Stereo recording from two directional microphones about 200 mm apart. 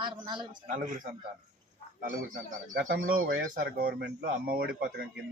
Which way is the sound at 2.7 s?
45° right (ahead or behind).